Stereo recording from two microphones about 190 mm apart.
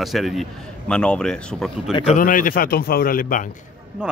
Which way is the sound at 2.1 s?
45° left (ahead or behind).